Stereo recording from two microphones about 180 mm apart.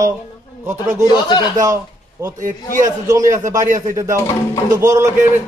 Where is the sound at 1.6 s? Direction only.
20° right (ahead or behind).